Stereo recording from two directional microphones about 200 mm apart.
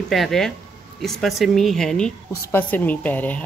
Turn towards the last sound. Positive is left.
turn(degrees=10)  # may be behind; listen again after turning